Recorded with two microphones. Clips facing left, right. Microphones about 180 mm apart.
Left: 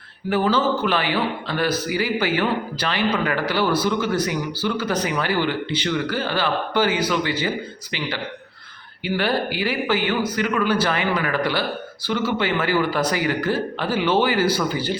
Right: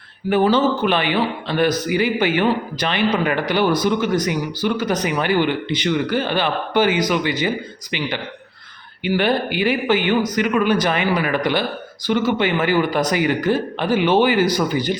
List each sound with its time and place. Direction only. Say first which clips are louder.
0.3 s a man's voice: right 4 dB; 20° right (ahead or behind)